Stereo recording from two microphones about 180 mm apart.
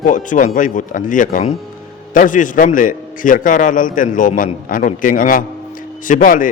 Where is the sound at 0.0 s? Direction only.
45° left (ahead or behind).